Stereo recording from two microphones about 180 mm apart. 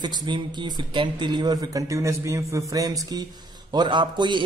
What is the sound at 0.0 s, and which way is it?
A man's voice, 25° right (ahead or behind).